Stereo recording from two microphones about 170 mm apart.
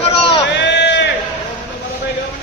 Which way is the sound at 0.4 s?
90° left.